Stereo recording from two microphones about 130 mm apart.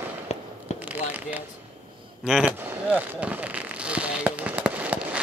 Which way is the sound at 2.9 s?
10° right (ahead or behind).